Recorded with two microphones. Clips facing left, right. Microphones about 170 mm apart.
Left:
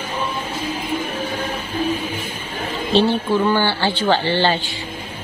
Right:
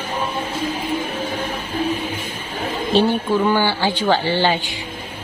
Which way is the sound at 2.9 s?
10° right (ahead or behind).